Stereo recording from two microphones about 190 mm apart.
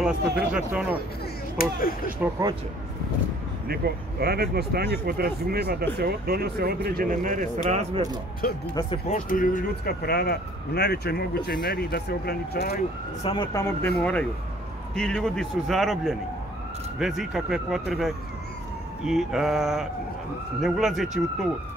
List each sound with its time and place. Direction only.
0.0 s speech: 5° right (ahead or behind)
1.6 s speech: 50° left (ahead or behind)
3.6 s speech: 55° right (ahead or behind); by 8.0 s 40° right (ahead or behind)
9.1 s speech: 45° left (ahead or behind)
13.2 s speech: 25° left (ahead or behind)
13.9 s speech: 5° left (ahead or behind)
19.0 s speech: centre (ahead or behind)